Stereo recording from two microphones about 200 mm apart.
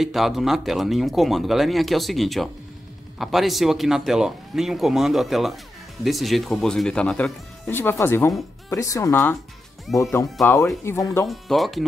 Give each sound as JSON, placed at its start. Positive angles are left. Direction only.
{"t": 0.0, "sound": "speech", "side_deg": 0}
{"t": 9.9, "sound": "speech", "side_deg": 0}
{"t": 10.4, "sound": "speech", "side_deg": 15}
{"t": 11.2, "sound": "speech", "side_deg": 0}